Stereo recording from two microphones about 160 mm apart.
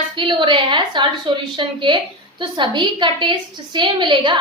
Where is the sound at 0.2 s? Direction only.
30° right (ahead or behind).